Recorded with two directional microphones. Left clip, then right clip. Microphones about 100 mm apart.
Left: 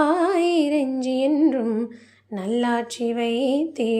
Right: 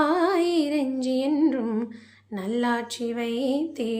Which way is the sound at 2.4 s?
35° left (ahead or behind).